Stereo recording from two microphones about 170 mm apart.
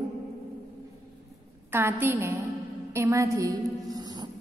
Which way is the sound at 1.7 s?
15° right (ahead or behind).